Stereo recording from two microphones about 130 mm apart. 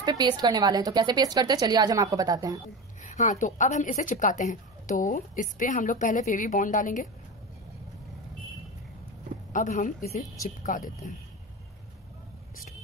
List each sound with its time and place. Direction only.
0.0 s a woman's voice: 35° right (ahead or behind)
3.0 s a woman's voice: 70° left (ahead or behind)
9.5 s a woman's voice: 85° left